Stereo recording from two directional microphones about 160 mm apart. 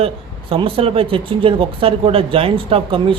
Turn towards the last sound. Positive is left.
turn(degrees=-35)  # may be behind; listen again after turning